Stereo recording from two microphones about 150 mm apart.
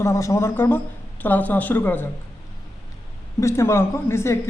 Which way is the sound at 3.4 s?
20° left (ahead or behind).